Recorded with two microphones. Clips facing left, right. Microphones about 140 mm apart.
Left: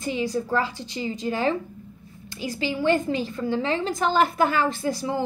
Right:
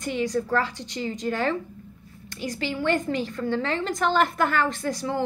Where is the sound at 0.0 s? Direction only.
5° left (ahead or behind).